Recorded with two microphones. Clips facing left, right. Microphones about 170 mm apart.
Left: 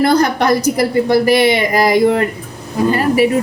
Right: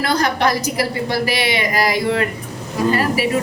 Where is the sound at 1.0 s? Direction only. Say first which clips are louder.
Left 9 dB; 50° left (ahead or behind).